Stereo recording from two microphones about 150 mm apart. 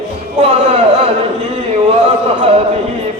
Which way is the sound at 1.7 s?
45° right (ahead or behind).